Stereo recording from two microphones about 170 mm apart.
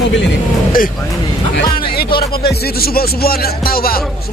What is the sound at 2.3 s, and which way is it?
Speech, 65° left (ahead or behind).